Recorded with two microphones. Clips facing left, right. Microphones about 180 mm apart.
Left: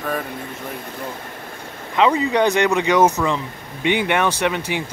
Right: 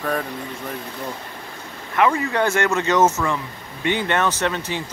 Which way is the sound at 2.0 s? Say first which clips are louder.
Left 3 dB; 20° left (ahead or behind).